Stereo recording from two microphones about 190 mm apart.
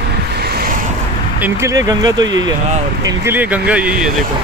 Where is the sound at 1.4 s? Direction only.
15° right (ahead or behind).